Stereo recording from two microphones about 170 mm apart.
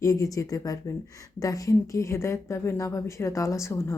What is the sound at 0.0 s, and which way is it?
Speech, 20° left (ahead or behind).